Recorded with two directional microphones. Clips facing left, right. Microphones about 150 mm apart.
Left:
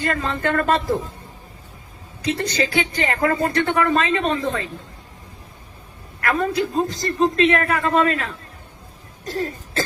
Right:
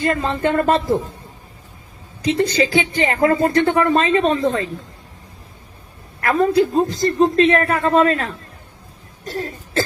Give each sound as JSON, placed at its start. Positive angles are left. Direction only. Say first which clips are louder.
{"t": 0.1, "sound": "a woman's voice", "louder": "right 2 dB", "side_deg": -25}
{"t": 2.2, "sound": "a woman's voice", "louder": "right 5 dB", "side_deg": -30}
{"t": 6.1, "sound": "a man's voice", "louder": "right 6 dB", "side_deg": -30}